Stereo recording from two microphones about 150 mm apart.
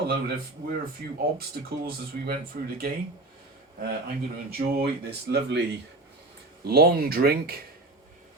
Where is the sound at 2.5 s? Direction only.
90° right.